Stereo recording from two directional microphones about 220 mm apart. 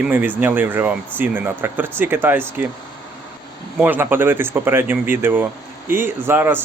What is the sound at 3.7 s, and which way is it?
A man's voice, 10° right (ahead or behind).